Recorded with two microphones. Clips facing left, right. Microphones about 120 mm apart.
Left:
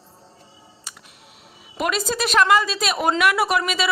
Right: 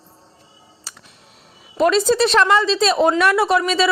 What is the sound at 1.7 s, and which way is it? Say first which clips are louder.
A woman's voice: right 8 dB; 30° right (ahead or behind).